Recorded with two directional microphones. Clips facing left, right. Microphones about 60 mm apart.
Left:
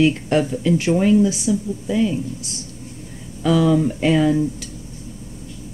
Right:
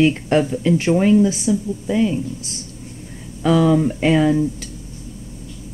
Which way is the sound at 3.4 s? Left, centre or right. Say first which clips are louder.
Right 1 dB; right.